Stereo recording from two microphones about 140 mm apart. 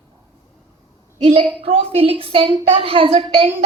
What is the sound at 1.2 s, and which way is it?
A woman's voice, 40° right (ahead or behind).